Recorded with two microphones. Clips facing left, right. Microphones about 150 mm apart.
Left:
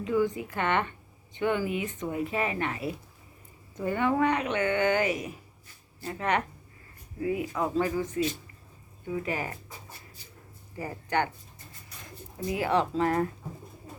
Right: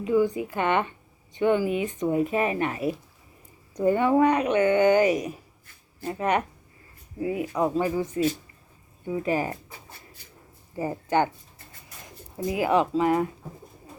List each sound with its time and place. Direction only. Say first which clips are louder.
0.0 s a woman's voice: right 4 dB; 15° right (ahead or behind)
3.8 s a woman's voice: right 6 dB; 20° right (ahead or behind)
9.3 s speech: right 7 dB; 35° right (ahead or behind)
10.8 s speech: right 5 dB; 20° right (ahead or behind)
12.4 s speech: right 4 dB; 25° right (ahead or behind)
12.9 s a woman's voice: right 4 dB; 5° right (ahead or behind)